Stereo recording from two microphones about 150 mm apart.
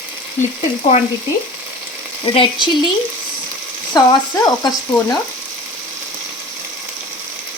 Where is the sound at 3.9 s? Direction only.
25° left (ahead or behind).